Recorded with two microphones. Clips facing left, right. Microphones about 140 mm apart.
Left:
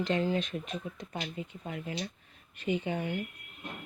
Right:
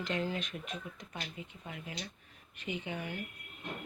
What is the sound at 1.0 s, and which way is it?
Speech, 40° left (ahead or behind).